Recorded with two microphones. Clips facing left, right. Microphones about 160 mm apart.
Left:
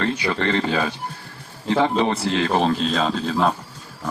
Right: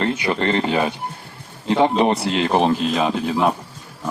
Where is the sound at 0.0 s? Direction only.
20° right (ahead or behind).